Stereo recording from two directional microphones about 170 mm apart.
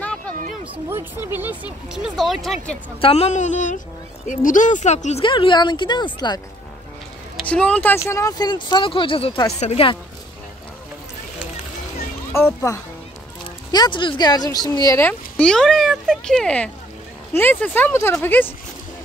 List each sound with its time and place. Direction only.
0.8 s speech: 15° right (ahead or behind)
2.1 s speech: centre (ahead or behind)
3.0 s speech: 35° left (ahead or behind)
5.2 s speech: 30° left (ahead or behind)
7.4 s speech: 5° left (ahead or behind); by 9.9 s 35° left (ahead or behind)
12.3 s speech: 15° left (ahead or behind)
15.0 s speech: 10° left (ahead or behind)